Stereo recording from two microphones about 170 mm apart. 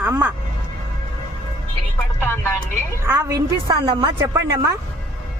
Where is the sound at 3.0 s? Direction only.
15° right (ahead or behind).